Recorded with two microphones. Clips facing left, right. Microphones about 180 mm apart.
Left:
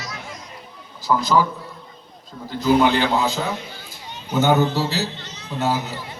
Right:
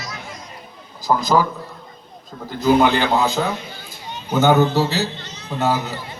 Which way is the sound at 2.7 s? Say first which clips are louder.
Right 1 dB; 50° right (ahead or behind).